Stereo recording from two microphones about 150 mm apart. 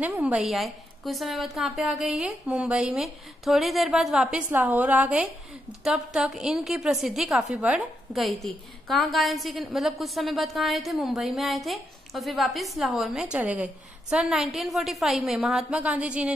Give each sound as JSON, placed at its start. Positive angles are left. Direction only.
{"t": 0.0, "sound": "a woman's voice", "side_deg": -10}